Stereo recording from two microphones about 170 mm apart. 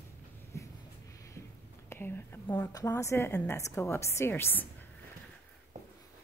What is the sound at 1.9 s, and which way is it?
A woman's voice, 15° left (ahead or behind).